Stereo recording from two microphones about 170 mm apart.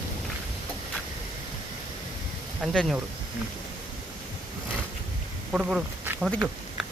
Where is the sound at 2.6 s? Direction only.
Centre (ahead or behind).